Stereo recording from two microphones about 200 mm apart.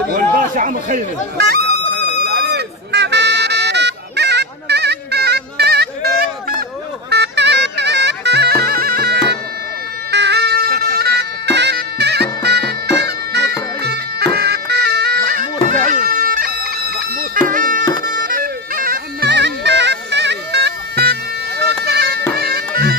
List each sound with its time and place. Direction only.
0.1 s chatter: 40° right (ahead or behind)
7.1 s bagpipes: 60° right (ahead or behind)
17.5 s music: 40° right (ahead or behind)
18.0 s bagpipes: 45° right (ahead or behind)